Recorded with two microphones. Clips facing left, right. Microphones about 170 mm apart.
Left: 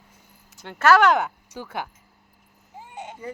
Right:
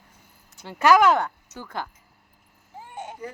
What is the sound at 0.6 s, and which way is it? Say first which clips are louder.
Speech: even; 10° right (ahead or behind).